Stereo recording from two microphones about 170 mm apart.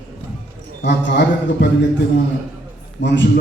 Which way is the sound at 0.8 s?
85° left.